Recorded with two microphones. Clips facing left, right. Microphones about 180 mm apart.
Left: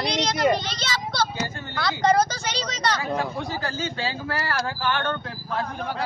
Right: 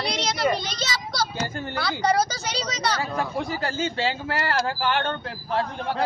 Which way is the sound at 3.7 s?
25° right (ahead or behind).